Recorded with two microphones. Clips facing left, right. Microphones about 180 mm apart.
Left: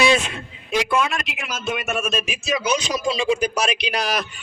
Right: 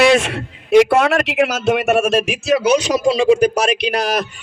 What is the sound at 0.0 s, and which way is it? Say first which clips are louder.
A man's voice: right 6 dB; 75° right (ahead or behind).